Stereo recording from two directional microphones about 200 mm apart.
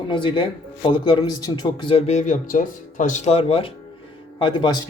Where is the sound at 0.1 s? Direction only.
25° left (ahead or behind).